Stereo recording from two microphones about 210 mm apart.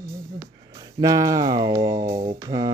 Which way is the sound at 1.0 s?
15° right (ahead or behind).